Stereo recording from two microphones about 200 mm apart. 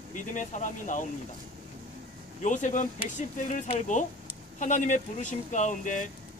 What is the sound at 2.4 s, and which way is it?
Speech, 40° left (ahead or behind).